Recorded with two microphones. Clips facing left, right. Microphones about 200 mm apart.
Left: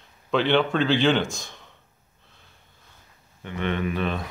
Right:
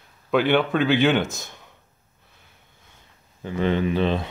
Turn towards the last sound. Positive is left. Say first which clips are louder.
# right 5 dB
turn(degrees=-30)  # may be behind; listen again after turning